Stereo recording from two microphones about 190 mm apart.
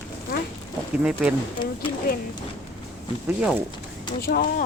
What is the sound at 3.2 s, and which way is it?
Speech, 5° right (ahead or behind).